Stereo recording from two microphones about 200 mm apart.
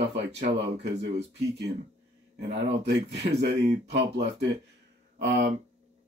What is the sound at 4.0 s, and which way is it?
Speech, 55° right (ahead or behind).